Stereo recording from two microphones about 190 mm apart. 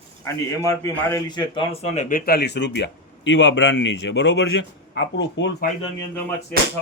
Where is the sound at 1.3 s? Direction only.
25° left (ahead or behind); by 5.6 s 65° left (ahead or behind).